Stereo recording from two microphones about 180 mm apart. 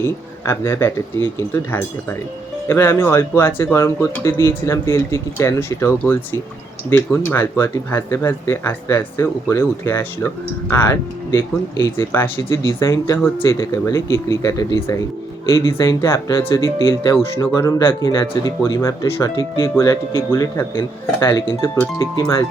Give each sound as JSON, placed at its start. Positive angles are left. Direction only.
{"t": 0.4, "sound": "speech", "side_deg": 15}